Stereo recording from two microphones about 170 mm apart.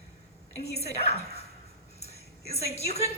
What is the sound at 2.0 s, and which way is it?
Music, 40° left (ahead or behind).